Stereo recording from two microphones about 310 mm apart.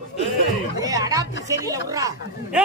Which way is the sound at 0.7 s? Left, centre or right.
Centre.